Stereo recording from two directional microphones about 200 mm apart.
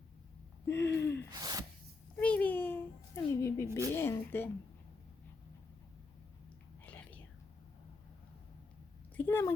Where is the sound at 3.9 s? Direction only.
10° left (ahead or behind).